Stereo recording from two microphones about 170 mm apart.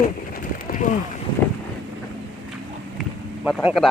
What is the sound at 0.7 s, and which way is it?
Boat, 50° left (ahead or behind).